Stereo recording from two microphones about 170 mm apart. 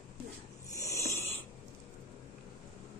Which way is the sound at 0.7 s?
15° left (ahead or behind).